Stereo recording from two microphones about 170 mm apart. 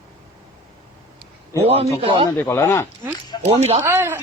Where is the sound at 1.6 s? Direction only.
35° right (ahead or behind).